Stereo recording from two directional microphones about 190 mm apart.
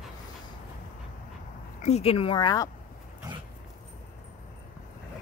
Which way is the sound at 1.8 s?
35° left (ahead or behind).